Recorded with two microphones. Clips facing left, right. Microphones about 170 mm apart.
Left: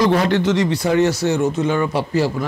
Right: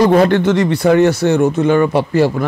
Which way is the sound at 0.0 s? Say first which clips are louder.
Right 5 dB; 55° right (ahead or behind).